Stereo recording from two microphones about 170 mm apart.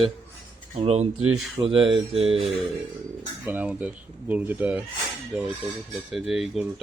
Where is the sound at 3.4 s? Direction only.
10° right (ahead or behind).